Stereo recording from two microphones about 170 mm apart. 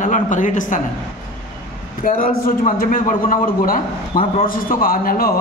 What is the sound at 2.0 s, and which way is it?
A man's voice, 55° left (ahead or behind).